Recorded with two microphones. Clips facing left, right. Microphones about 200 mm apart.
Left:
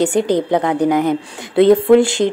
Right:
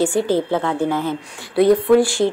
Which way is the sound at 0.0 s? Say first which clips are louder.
Left 2 dB; 20° left (ahead or behind).